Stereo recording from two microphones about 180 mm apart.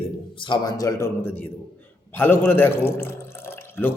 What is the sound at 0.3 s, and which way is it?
Speech, 25° left (ahead or behind).